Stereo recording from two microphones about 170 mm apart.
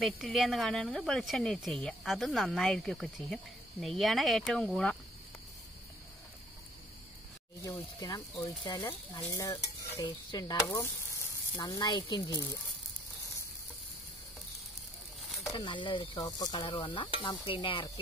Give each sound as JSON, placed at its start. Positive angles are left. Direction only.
{"t": 0.0, "sound": "speech", "side_deg": 0}
{"t": 8.6, "sound": "stir", "side_deg": 20}
{"t": 15.5, "sound": "stir", "side_deg": 30}